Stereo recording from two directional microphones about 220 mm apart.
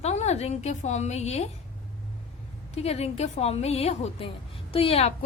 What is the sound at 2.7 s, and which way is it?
A woman's voice, 30° left (ahead or behind).